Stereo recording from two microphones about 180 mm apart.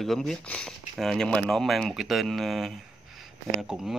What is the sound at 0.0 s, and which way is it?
Speech, centre (ahead or behind).